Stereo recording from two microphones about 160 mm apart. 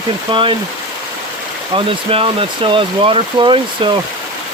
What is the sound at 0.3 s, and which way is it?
Speech, 30° right (ahead or behind).